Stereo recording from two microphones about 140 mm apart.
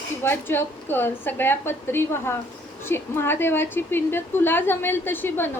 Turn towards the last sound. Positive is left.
turn(degrees=15)  # may be behind; listen again after turning